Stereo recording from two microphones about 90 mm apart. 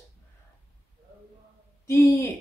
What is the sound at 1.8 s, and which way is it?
Speech, 35° left (ahead or behind).